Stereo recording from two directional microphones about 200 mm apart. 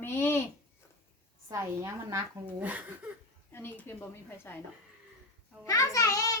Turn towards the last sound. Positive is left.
turn(degrees=15)  # may be behind; listen again after turning